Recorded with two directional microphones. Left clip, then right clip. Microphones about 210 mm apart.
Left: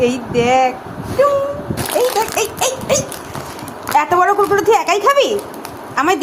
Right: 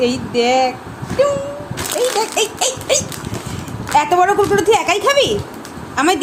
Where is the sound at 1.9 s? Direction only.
Centre (ahead or behind).